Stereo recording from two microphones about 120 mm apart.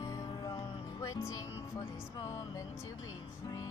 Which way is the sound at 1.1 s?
25° left (ahead or behind).